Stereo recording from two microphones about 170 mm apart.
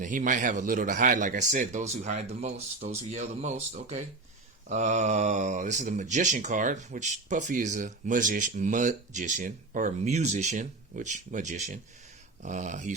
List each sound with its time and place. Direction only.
0.0 s speech: 50° right (ahead or behind)